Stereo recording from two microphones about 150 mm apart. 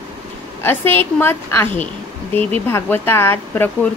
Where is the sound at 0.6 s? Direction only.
15° left (ahead or behind).